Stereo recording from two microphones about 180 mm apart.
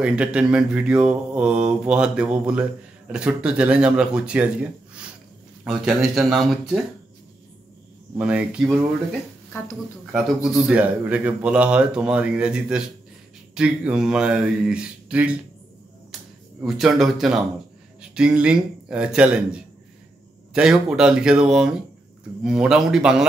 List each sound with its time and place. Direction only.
0.0 s speech: 5° right (ahead or behind)
5.6 s speech: 5° right (ahead or behind)
8.2 s speech: 5° right (ahead or behind)
10.1 s speech: centre (ahead or behind)
16.6 s speech: centre (ahead or behind)